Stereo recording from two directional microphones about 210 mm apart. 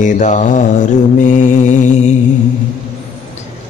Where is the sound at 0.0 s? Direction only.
35° left (ahead or behind).